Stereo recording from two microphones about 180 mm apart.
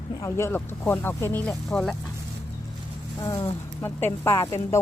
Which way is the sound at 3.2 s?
25° left (ahead or behind).